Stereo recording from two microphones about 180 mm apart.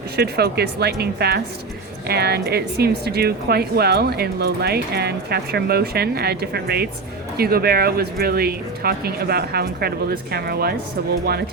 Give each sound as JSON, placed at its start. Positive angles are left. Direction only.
{"t": 0.2, "sound": "a woman's voice", "side_deg": -65}